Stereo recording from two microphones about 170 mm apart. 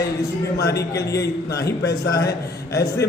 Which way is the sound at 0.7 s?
20° left (ahead or behind).